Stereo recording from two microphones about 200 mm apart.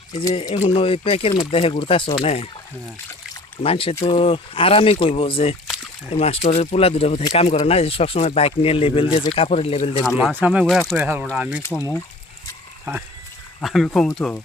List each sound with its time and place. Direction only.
0.6 s speech: 30° left (ahead or behind)
3.6 s speech: 30° left (ahead or behind)
5.6 s a sound: centre (ahead or behind)
6.1 s speech: 30° left (ahead or behind)
10.2 s speech: 5° right (ahead or behind)
11.8 s speech: 15° left (ahead or behind)
13.6 s speech: centre (ahead or behind)